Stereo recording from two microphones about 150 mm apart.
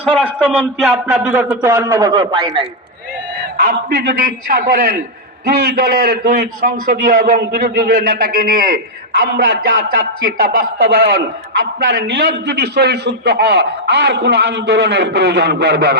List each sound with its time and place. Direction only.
0.0 s a man's voice: 10° right (ahead or behind)
1.6 s a man's voice: 15° right (ahead or behind)
2.0 s a man's voice: 30° right (ahead or behind)
3.6 s a man's voice: 85° right; by 8.8 s 70° right (ahead or behind)
9.2 s a man's voice: 90° right